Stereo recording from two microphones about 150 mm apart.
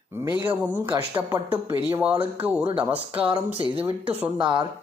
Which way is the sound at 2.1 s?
40° right (ahead or behind).